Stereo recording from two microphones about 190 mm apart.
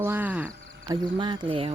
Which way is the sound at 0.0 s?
10° right (ahead or behind).